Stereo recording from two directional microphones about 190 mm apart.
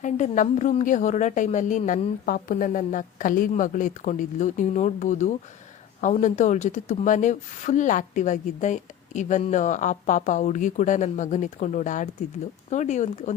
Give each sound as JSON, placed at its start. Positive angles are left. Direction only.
{"t": 0.0, "sound": "speech", "side_deg": 40}